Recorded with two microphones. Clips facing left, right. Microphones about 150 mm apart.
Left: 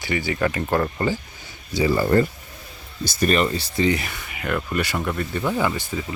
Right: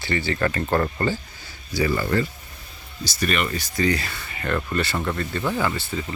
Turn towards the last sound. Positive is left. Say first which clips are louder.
# left 1 dB
turn(degrees=10)  # may be behind; listen again after turning